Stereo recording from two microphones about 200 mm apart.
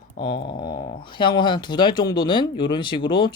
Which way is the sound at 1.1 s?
25° left (ahead or behind).